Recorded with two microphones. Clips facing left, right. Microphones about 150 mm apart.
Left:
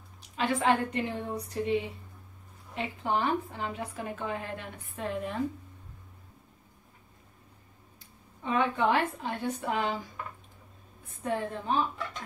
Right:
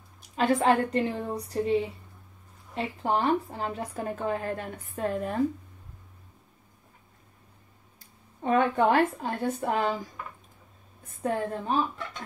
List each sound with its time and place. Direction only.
0.4 s a woman's voice: 40° right (ahead or behind)
8.4 s a woman's voice: 50° right (ahead or behind)
11.1 s a woman's voice: 40° right (ahead or behind)